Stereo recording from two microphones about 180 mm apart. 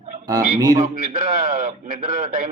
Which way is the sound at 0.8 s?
50° right (ahead or behind).